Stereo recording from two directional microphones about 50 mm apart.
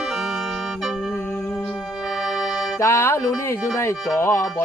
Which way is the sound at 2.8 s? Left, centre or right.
Left.